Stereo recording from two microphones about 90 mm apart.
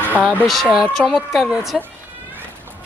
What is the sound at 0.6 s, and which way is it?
Speech, 10° right (ahead or behind).